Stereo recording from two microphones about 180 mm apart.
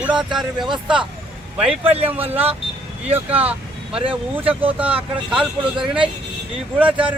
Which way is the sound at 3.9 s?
30° right (ahead or behind).